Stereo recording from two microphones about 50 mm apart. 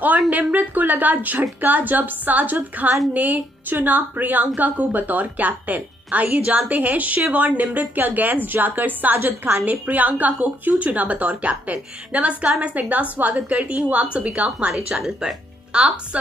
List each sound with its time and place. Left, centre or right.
0.0 s a woman's voice: right
9.2 s a woman's voice: right
9.7 s a woman's voice: right
14.9 s speech: centre
15.7 s a woman's voice: right